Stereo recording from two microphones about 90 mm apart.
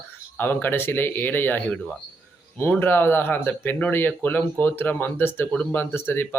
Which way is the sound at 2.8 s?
25° left (ahead or behind).